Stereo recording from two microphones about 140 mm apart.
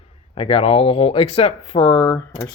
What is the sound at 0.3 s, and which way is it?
Speech, 40° left (ahead or behind).